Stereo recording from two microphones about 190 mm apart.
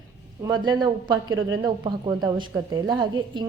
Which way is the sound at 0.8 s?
25° right (ahead or behind).